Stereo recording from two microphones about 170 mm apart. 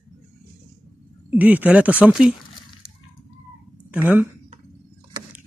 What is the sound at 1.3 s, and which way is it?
Speech, 10° right (ahead or behind).